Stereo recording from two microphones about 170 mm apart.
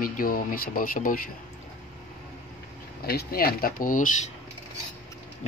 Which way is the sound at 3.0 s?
60° left (ahead or behind).